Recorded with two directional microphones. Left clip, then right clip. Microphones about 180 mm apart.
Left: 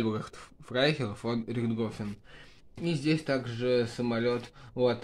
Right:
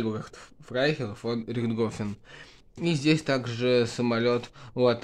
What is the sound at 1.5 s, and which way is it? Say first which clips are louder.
Speech: right 4 dB; 25° right (ahead or behind).